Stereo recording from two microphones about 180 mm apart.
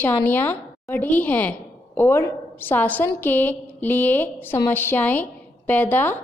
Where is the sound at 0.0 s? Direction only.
10° left (ahead or behind).